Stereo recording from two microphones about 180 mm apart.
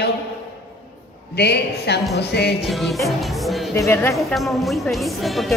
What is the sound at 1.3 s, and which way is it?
A woman's voice, 65° left (ahead or behind).